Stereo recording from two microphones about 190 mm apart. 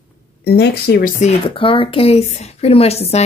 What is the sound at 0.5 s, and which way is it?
Speech, 60° left (ahead or behind).